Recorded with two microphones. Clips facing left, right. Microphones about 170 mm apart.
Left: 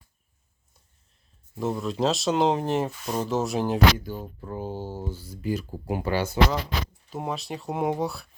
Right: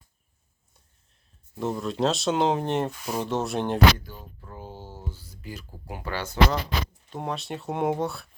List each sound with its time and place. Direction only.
1.5 s speech: centre (ahead or behind)
4.2 s speech: 30° left (ahead or behind)
4.6 s speech: 40° left (ahead or behind)
5.1 s speech: 5° left (ahead or behind)